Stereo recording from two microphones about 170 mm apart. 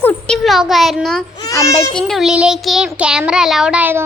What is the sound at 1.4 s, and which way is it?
Child singing, 20° left (ahead or behind).